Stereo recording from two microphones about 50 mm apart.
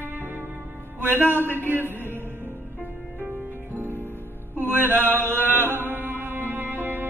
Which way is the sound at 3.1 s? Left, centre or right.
Right.